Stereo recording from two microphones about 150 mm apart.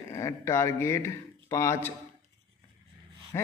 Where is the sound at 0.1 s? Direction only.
20° left (ahead or behind).